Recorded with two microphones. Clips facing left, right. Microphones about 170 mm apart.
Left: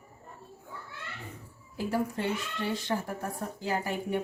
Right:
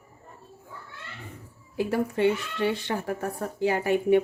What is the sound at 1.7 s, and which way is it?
Speech, 70° right (ahead or behind).